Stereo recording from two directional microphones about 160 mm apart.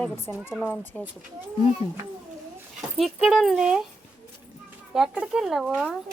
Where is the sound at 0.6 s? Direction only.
10° left (ahead or behind).